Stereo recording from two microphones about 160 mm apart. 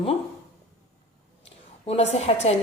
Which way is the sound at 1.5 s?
40° left (ahead or behind).